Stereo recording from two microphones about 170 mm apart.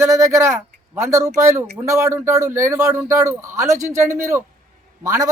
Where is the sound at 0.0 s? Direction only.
15° right (ahead or behind).